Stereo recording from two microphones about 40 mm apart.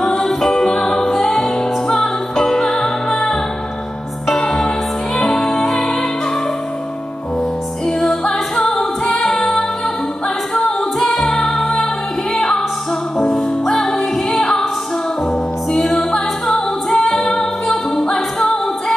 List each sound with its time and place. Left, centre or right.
0.0 s music: centre
8.0 s music: centre
10.5 s music: centre
13.3 s music: centre
16.4 s a capella: centre
17.1 s music: centre